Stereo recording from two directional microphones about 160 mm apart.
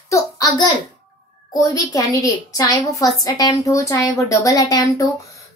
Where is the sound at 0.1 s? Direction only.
20° left (ahead or behind).